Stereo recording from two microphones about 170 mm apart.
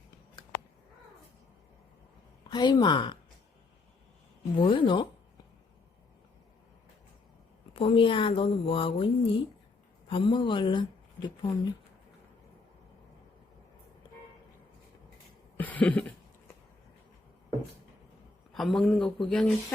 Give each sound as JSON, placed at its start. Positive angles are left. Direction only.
{"t": 2.5, "sound": "speech", "side_deg": 25}
{"t": 4.6, "sound": "speech", "side_deg": 30}
{"t": 7.7, "sound": "speech", "side_deg": 30}
{"t": 15.5, "sound": "cough", "side_deg": 10}
{"t": 18.5, "sound": "speech", "side_deg": 0}